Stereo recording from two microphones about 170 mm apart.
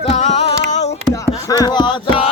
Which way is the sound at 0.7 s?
40° left (ahead or behind).